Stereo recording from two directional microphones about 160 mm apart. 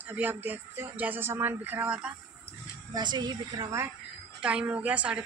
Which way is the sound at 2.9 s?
25° right (ahead or behind).